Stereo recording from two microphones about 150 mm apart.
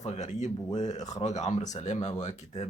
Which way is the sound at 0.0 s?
50° left (ahead or behind).